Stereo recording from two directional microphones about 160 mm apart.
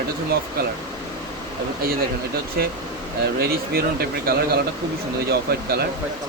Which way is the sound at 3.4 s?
80° right.